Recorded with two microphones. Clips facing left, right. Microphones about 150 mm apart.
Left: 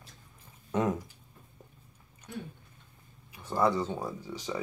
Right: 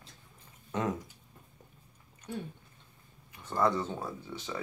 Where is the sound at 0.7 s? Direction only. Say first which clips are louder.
Left 4 dB; 10° left (ahead or behind).